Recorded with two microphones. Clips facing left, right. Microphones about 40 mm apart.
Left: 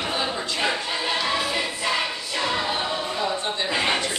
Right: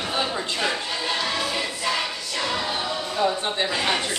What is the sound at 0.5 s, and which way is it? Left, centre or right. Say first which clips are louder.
Choir: left 3 dB; centre.